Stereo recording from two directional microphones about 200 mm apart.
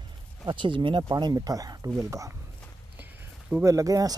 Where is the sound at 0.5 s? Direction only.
25° right (ahead or behind).